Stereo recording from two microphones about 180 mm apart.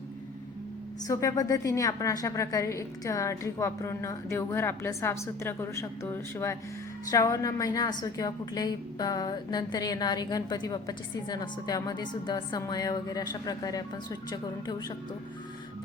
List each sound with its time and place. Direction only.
1.0 s a woman's voice: 20° left (ahead or behind)